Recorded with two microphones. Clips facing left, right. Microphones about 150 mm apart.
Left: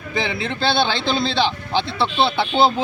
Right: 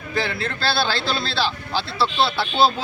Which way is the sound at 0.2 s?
20° left (ahead or behind).